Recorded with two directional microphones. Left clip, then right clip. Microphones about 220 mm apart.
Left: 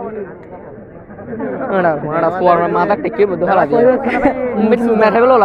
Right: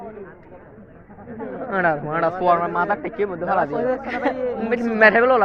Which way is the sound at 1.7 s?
15° right (ahead or behind).